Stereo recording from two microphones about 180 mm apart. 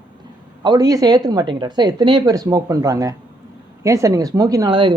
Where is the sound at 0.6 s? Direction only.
25° right (ahead or behind).